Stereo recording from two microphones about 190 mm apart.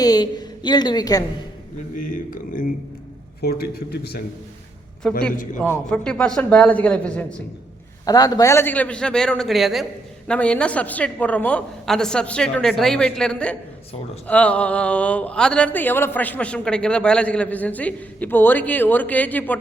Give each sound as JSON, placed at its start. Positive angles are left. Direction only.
{"t": 0.0, "sound": "a woman's voice", "side_deg": 20}
{"t": 2.0, "sound": "a man's voice", "side_deg": 45}
{"t": 3.4, "sound": "speech", "side_deg": 55}
{"t": 5.0, "sound": "a woman's voice", "side_deg": 5}
{"t": 8.0, "sound": "a woman's voice", "side_deg": 20}